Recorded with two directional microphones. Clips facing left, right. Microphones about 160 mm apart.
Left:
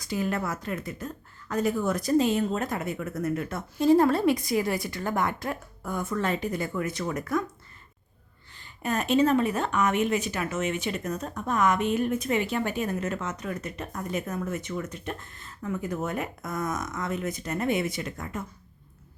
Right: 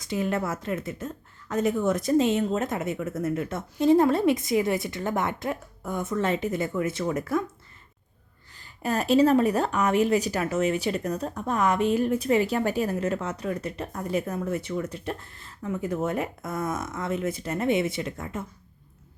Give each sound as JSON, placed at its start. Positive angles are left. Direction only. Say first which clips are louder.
{"t": 0.0, "sound": "a woman's voice", "louder": "right 2 dB", "side_deg": -25}
{"t": 8.5, "sound": "speech", "louder": "right 2 dB", "side_deg": -35}